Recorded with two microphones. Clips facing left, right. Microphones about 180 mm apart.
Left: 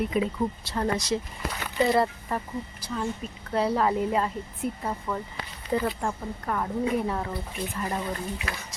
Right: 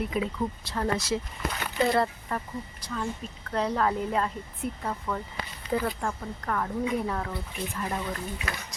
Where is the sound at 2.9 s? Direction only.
15° left (ahead or behind); by 6.0 s centre (ahead or behind).